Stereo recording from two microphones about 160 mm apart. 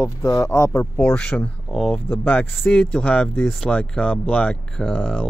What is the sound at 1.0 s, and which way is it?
Speech, 5° left (ahead or behind).